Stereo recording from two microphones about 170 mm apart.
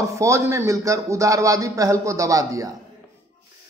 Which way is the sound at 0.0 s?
15° right (ahead or behind).